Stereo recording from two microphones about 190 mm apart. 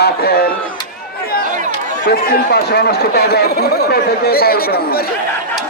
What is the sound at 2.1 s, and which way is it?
Speech, 55° left (ahead or behind).